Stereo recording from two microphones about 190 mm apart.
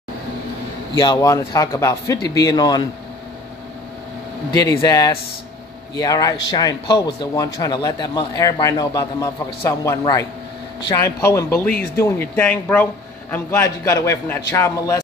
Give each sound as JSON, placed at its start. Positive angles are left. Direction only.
{"t": 0.9, "sound": "a man's voice", "side_deg": 20}
{"t": 4.6, "sound": "a man's voice", "side_deg": 20}